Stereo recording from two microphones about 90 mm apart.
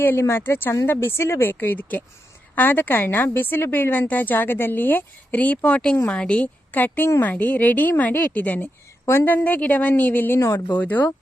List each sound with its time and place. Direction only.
0.0 s a woman's voice: 25° left (ahead or behind)